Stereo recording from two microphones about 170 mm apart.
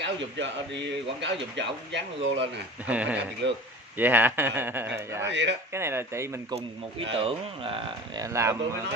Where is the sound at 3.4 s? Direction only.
90° right.